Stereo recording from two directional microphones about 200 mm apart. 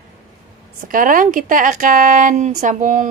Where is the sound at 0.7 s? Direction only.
40° right (ahead or behind).